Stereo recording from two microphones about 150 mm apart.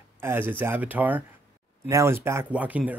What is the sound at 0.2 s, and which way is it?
Speech, 15° right (ahead or behind).